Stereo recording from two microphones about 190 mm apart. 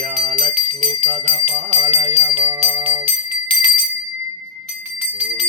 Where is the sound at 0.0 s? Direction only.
35° right (ahead or behind).